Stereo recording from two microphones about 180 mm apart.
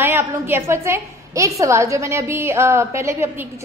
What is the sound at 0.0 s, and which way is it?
A woman's voice, 10° right (ahead or behind).